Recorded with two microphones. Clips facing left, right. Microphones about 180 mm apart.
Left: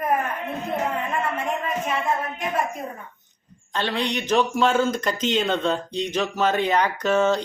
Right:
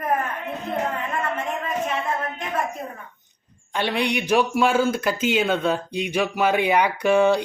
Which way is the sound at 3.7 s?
10° right (ahead or behind).